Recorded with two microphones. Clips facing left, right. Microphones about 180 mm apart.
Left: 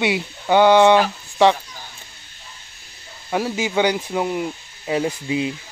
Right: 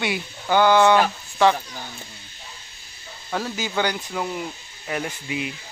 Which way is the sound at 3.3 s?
20° left (ahead or behind).